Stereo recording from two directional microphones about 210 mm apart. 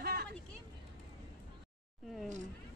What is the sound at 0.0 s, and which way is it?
Vehicle, 50° right (ahead or behind).